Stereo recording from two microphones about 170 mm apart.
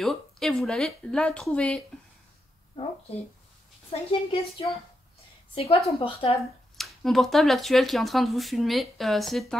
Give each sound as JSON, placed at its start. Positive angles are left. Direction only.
{"t": 0.0, "sound": "speech", "side_deg": 0}
{"t": 4.1, "sound": "a woman's voice", "side_deg": 35}
{"t": 6.8, "sound": "speech", "side_deg": 0}